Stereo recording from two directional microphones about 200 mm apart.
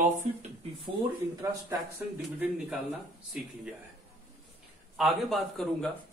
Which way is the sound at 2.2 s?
5° right (ahead or behind).